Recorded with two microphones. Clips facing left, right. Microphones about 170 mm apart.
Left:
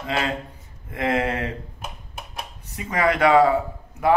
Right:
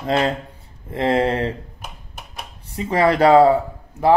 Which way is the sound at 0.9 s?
30° right (ahead or behind).